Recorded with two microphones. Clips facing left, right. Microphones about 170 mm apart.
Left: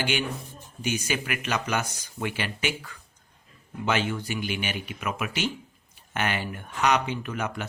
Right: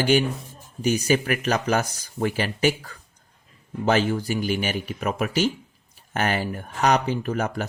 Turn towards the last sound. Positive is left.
turn(degrees=-40)  # may be behind; listen again after turning